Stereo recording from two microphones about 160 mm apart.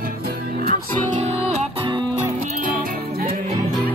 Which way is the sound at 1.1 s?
40° right (ahead or behind).